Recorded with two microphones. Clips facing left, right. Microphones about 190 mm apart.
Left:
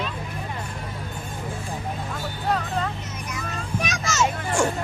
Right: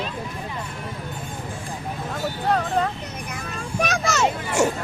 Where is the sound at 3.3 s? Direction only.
55° right (ahead or behind).